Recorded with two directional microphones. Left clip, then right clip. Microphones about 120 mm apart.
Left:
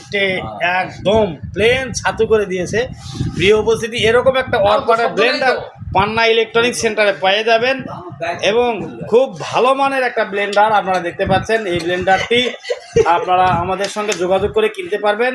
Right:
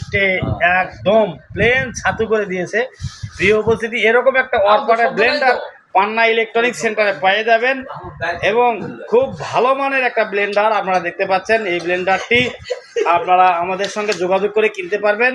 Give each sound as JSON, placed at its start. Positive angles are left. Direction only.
{"t": 0.1, "sound": "a man's voice", "side_deg": 30}
{"t": 8.4, "sound": "a man's voice", "side_deg": 40}
{"t": 10.0, "sound": "speech", "side_deg": 20}